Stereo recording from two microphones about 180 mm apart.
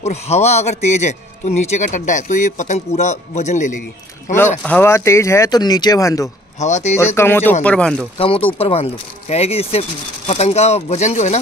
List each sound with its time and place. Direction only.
0.0 s a man's voice: 35° left (ahead or behind)
4.6 s speech: 10° left (ahead or behind)
6.6 s a man's voice: 40° left (ahead or behind)
7.2 s speech: 15° left (ahead or behind)
8.2 s a man's voice: 30° left (ahead or behind)